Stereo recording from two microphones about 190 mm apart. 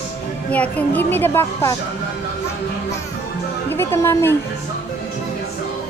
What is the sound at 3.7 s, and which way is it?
Speech, 10° left (ahead or behind).